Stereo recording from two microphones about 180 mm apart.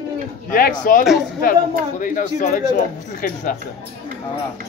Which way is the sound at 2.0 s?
50° left (ahead or behind).